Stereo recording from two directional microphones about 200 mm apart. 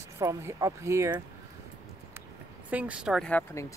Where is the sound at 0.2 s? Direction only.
15° right (ahead or behind).